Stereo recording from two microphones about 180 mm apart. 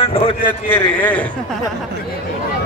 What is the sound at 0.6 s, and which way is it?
Speech, 10° left (ahead or behind).